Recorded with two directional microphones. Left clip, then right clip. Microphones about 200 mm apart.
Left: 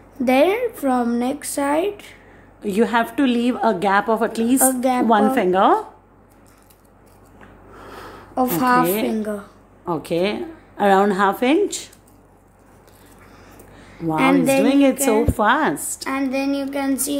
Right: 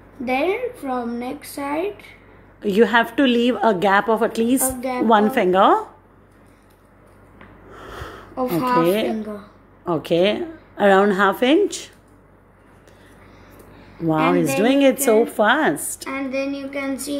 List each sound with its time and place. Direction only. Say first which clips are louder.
0.2 s a woman's voice: left 5 dB; 45° left (ahead or behind)
2.6 s a woman's voice: right 3 dB; 10° right (ahead or behind)
4.6 s a woman's voice: left 5 dB; 40° left (ahead or behind)
5.3 s a woman's voice: right 1 dB; 5° right (ahead or behind)
7.7 s a sound: right 2 dB; 5° right (ahead or behind)
8.4 s a woman's voice: left 2 dB; 45° left (ahead or behind)
9.8 s a woman's voice: right 3 dB; 10° right (ahead or behind)
14.3 s a woman's voice: left 1 dB; 10° right (ahead or behind)
16.1 s a woman's voice: left 3 dB; 50° left (ahead or behind)